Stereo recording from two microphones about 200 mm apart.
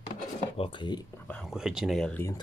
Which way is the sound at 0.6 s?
25° left (ahead or behind).